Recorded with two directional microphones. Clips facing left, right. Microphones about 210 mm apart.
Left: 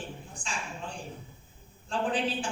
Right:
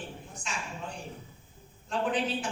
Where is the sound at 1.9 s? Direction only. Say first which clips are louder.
Even; 30° left (ahead or behind).